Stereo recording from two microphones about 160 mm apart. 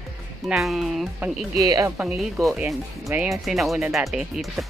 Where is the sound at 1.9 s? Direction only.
10° right (ahead or behind).